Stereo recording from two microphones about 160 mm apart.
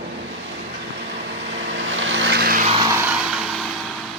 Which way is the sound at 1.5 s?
90° right.